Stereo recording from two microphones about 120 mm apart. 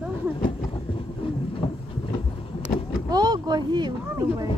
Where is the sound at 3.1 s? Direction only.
35° right (ahead or behind).